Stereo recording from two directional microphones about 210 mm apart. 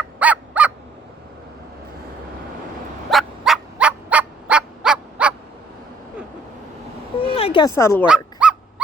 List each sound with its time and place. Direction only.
0.2 s fowl: 5° right (ahead or behind)
3.1 s fowl: centre (ahead or behind)
7.2 s a sound: 25° left (ahead or behind)
8.0 s dog: 5° right (ahead or behind)